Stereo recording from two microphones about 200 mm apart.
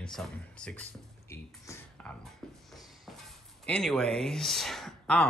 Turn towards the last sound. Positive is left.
turn(degrees=5)  # may be behind; listen again after turning